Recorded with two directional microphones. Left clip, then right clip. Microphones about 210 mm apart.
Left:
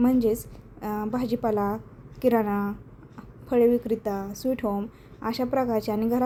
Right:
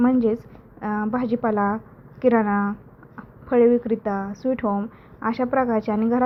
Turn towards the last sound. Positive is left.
turn(degrees=5)  # may be behind; listen again after turning